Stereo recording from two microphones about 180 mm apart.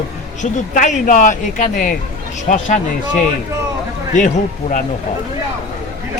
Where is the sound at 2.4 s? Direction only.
40° left (ahead or behind).